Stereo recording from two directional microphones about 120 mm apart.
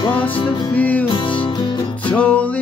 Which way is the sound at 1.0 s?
45° left (ahead or behind).